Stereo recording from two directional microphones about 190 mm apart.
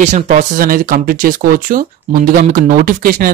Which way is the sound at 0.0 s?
40° right (ahead or behind).